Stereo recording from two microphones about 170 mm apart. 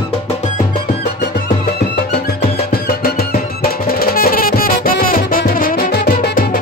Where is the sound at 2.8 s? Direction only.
60° left (ahead or behind).